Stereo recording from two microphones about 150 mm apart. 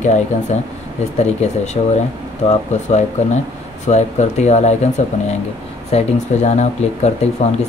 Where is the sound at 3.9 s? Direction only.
50° left (ahead or behind).